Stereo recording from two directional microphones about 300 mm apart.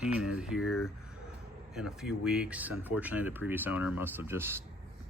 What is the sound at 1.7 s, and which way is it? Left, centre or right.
Speech, centre.